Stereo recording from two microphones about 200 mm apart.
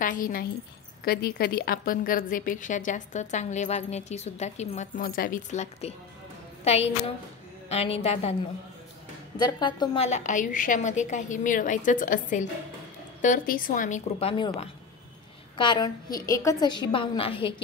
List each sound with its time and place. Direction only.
0.0 s a woman's voice: 45° left (ahead or behind)
9.4 s a woman's voice: 20° left (ahead or behind); by 14.3 s 40° left (ahead or behind)
14.3 s a woman's voice: 25° left (ahead or behind)